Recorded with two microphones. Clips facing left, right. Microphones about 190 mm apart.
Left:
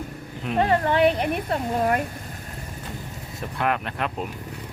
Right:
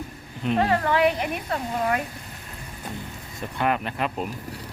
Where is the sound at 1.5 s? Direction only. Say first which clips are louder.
Left 1 dB; 45° left (ahead or behind).